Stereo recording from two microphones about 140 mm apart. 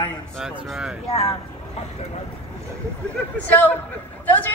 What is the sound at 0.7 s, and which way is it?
Speech, 5° right (ahead or behind).